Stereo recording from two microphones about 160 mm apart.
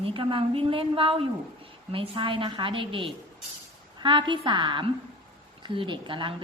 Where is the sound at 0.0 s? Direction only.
35° right (ahead or behind).